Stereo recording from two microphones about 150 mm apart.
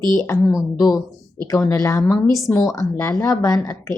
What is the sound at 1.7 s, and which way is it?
A woman's voice, 20° left (ahead or behind).